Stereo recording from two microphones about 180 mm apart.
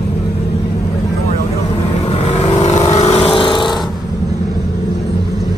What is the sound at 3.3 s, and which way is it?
Snoring, 25° left (ahead or behind).